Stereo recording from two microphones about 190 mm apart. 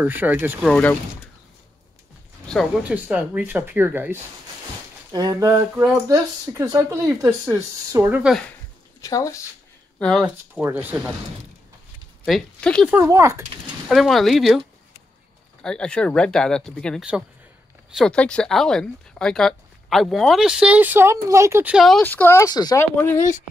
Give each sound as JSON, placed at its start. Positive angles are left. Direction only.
{"t": 0.0, "sound": "speech", "side_deg": -10}
{"t": 0.7, "sound": "speech", "side_deg": 5}
{"t": 2.8, "sound": "speech", "side_deg": -5}
{"t": 9.0, "sound": "speech", "side_deg": 15}
{"t": 9.9, "sound": "speech", "side_deg": 5}
{"t": 10.2, "sound": "speech", "side_deg": -10}
{"t": 12.3, "sound": "speech", "side_deg": 5}
{"t": 12.9, "sound": "speech", "side_deg": -15}
{"t": 13.8, "sound": "speech", "side_deg": 0}
{"t": 15.6, "sound": "speech", "side_deg": 5}